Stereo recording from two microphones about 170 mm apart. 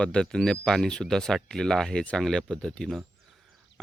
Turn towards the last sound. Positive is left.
turn(degrees=5)  # may be behind; listen again after turning